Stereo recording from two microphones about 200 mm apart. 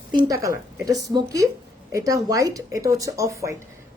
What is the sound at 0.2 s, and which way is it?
A woman's voice, 15° right (ahead or behind).